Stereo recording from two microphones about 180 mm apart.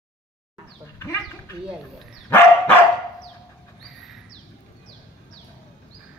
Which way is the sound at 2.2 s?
10° left (ahead or behind).